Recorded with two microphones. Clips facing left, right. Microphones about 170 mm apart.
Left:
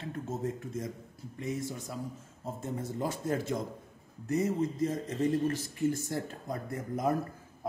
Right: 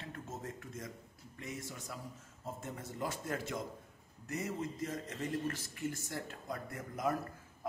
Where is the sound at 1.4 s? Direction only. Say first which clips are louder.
Left 9 dB; 30° left (ahead or behind).